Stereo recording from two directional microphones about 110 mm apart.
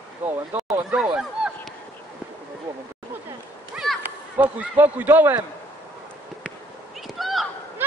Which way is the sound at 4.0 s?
15° right (ahead or behind).